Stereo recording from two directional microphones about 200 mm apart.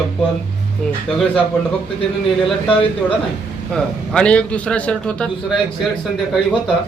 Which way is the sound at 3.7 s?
5° left (ahead or behind).